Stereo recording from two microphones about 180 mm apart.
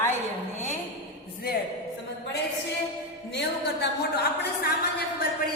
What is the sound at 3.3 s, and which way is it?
A woman's voice, 70° left (ahead or behind).